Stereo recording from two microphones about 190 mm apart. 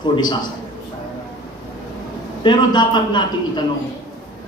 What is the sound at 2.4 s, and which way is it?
A man's voice, 25° left (ahead or behind).